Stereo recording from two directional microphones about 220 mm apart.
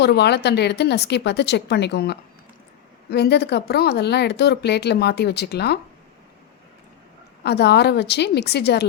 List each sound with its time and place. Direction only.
0.0 s speech: 50° left (ahead or behind)
7.4 s speech: 50° left (ahead or behind)